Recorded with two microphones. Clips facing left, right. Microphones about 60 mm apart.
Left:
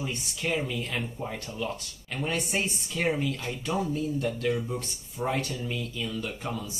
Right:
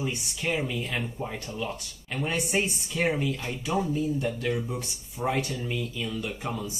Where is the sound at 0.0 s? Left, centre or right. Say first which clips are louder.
Right 2 dB; centre.